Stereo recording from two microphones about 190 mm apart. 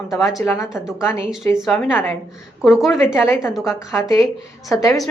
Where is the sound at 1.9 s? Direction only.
10° left (ahead or behind).